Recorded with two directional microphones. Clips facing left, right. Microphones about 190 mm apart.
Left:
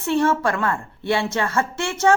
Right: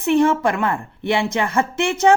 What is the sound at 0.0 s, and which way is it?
A woman's voice, 15° right (ahead or behind).